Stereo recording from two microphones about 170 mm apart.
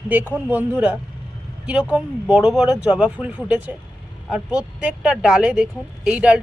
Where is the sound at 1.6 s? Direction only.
5° right (ahead or behind).